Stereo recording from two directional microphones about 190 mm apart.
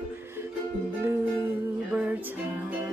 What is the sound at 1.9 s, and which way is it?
Music, 5° right (ahead or behind).